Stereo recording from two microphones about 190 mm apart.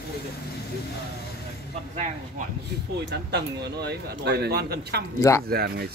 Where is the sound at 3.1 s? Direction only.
60° right (ahead or behind).